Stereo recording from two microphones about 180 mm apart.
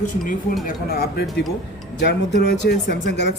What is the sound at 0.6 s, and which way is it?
Speech, 60° left (ahead or behind).